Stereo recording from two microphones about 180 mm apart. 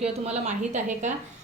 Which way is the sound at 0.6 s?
40° right (ahead or behind).